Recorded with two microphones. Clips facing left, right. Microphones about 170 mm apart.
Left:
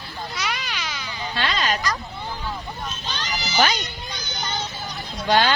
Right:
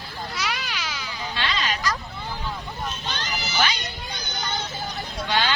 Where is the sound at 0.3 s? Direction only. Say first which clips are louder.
Even; 5° right (ahead or behind).